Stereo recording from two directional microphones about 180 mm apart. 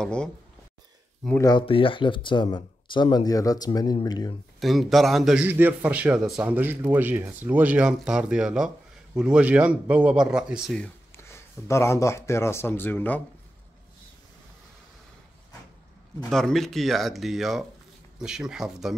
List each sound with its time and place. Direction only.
0.0 s a man's voice: 5° left (ahead or behind)
1.4 s speech: 25° left (ahead or behind)
4.6 s a man's voice: centre (ahead or behind)
10.8 s speech: 15° left (ahead or behind)
16.3 s a man's voice: centre (ahead or behind)